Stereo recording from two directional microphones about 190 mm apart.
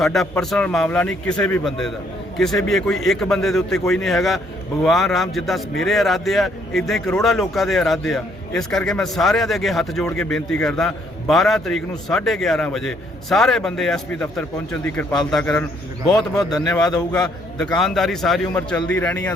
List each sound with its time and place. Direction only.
0.0 s a man's voice: centre (ahead or behind)
16.5 s a man's voice: 20° left (ahead or behind)
17.7 s a man's voice: centre (ahead or behind)